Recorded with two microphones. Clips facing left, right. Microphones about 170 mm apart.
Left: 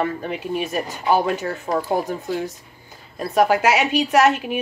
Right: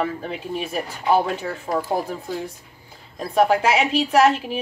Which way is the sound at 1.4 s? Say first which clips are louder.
Left 2 dB; 25° left (ahead or behind).